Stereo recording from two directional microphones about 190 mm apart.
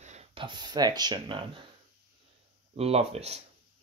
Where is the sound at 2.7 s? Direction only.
35° right (ahead or behind).